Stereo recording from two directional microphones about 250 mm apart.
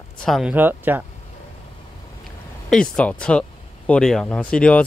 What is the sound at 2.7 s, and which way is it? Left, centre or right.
Speech, centre.